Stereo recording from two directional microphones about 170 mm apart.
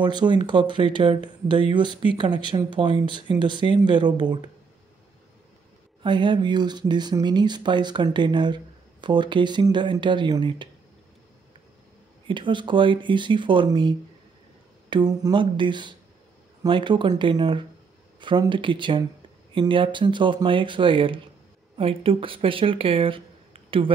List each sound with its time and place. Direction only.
0.0 s speech: 25° right (ahead or behind)
6.0 s speech: 25° right (ahead or behind)
12.3 s speech: 30° right (ahead or behind)